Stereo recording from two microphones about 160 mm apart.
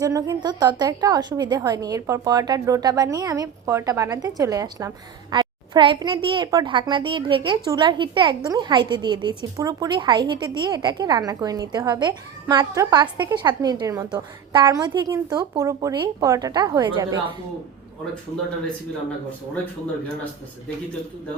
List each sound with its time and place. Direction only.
0.0 s a woman's voice: 20° right (ahead or behind)